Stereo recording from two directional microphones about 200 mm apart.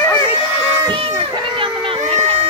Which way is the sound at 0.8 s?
25° right (ahead or behind).